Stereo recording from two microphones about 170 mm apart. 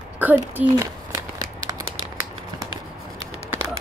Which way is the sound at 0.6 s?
15° right (ahead or behind).